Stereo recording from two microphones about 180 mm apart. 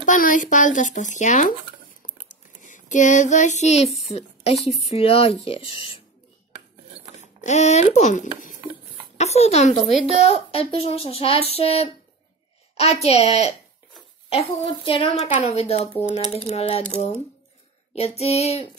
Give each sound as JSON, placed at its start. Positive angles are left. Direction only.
{"t": 0.0, "sound": "speech", "side_deg": 45}
{"t": 2.2, "sound": "a sound", "side_deg": 45}
{"t": 4.4, "sound": "a woman's voice", "side_deg": 35}
{"t": 7.2, "sound": "a child's voice", "side_deg": 40}
{"t": 14.7, "sound": "a woman's voice", "side_deg": 30}